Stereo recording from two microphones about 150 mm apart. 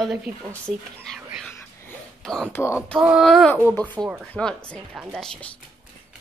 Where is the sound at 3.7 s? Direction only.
10° left (ahead or behind).